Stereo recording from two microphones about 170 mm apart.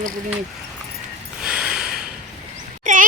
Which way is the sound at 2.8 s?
50° right (ahead or behind).